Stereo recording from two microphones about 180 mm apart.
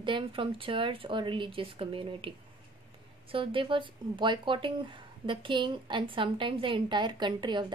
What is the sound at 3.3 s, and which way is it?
A woman's voice, 30° right (ahead or behind).